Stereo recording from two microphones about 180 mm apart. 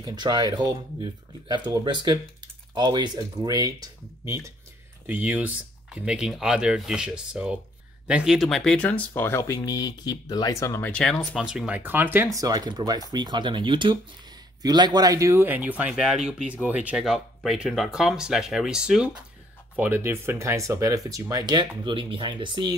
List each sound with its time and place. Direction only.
0.0 s speech: 25° right (ahead or behind)